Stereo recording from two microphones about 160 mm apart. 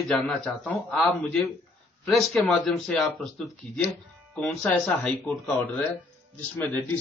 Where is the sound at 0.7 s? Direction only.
10° left (ahead or behind).